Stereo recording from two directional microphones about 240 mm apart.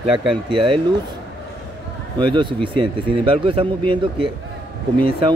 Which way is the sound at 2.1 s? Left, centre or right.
Centre.